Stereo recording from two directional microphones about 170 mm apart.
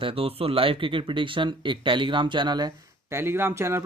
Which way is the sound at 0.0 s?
35° right (ahead or behind).